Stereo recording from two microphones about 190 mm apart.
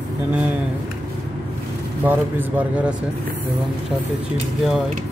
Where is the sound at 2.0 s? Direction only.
10° right (ahead or behind).